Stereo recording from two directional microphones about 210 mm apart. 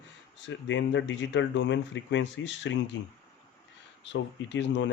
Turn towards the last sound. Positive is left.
turn(degrees=60)  # may be behind; listen again after turning